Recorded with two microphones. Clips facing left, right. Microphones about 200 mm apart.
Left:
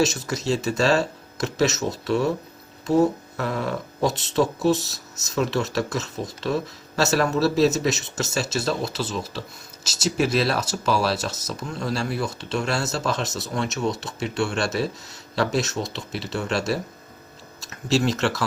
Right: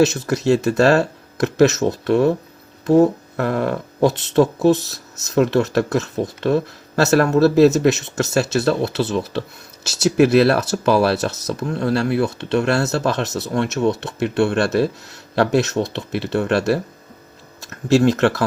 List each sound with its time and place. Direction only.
0.0 s speech: 55° right (ahead or behind)
16.0 s speech: 55° right (ahead or behind)